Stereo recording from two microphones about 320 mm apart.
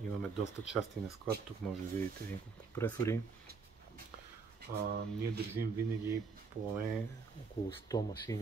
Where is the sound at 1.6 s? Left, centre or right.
Centre.